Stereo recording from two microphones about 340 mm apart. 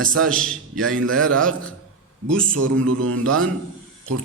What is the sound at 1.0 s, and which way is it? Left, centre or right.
Speech, right.